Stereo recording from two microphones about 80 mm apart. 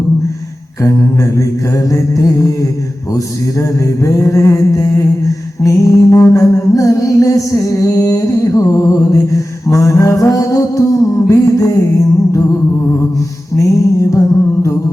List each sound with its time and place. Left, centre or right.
0.8 s mantra: left
1.9 s music: left
3.6 s music: left
13.6 s music: left